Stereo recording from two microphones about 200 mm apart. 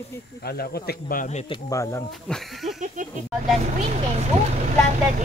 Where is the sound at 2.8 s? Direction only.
40° right (ahead or behind).